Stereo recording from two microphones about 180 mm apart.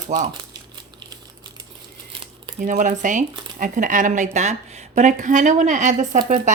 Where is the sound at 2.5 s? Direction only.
45° right (ahead or behind).